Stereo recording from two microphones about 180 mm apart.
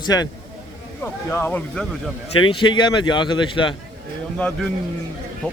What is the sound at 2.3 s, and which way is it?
Speech, 25° left (ahead or behind).